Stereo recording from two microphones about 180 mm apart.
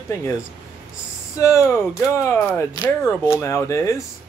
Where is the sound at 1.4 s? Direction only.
15° left (ahead or behind).